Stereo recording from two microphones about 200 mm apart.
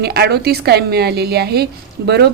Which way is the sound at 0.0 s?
55° right (ahead or behind).